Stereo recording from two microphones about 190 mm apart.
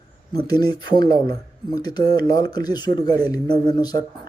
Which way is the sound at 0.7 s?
25° left (ahead or behind).